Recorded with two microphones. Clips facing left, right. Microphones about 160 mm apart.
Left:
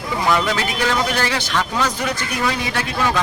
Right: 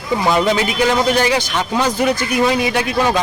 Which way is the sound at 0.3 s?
25° right (ahead or behind).